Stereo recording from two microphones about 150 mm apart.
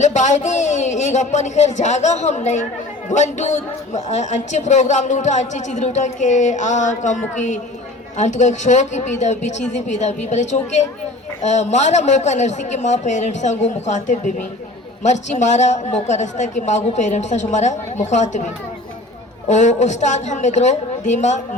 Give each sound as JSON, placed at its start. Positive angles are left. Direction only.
{"t": 0.0, "sound": "a woman's voice", "side_deg": 55}
{"t": 19.5, "sound": "a woman's voice", "side_deg": 50}